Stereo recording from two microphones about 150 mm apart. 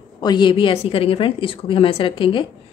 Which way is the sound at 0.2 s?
30° left (ahead or behind).